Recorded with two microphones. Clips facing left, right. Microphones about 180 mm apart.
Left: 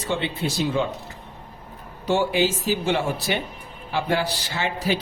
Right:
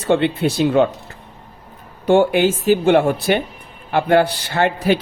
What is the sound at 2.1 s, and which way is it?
A man's voice, 55° right (ahead or behind).